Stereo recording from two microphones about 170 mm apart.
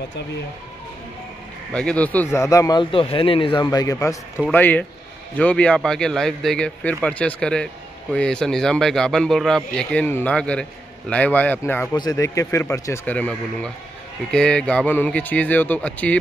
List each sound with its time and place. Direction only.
1.7 s a man's voice: 5° left (ahead or behind)